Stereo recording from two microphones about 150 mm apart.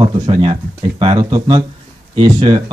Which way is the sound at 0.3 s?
35° right (ahead or behind).